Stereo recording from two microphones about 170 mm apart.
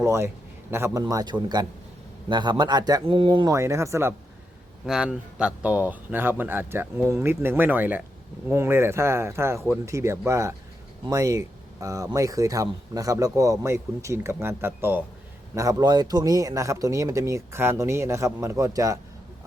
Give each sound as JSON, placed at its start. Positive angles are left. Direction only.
{"t": 0.0, "sound": "a man's voice", "side_deg": -15}
{"t": 4.9, "sound": "a man's voice", "side_deg": -5}